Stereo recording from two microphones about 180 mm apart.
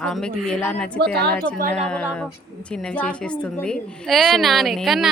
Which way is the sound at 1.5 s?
50° right (ahead or behind).